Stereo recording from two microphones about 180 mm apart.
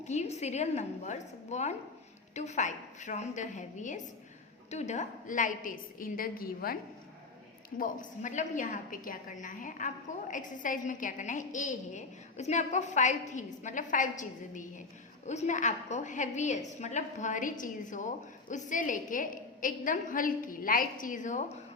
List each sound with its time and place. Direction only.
0.0 s a woman's voice: 40° left (ahead or behind); by 6.7 s 55° left (ahead or behind)
7.8 s a woman's voice: 45° left (ahead or behind)